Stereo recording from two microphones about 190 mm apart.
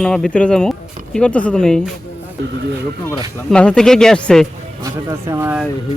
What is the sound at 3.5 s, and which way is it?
Speech, 5° left (ahead or behind).